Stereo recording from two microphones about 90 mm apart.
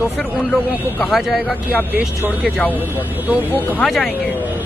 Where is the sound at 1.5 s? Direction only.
20° right (ahead or behind).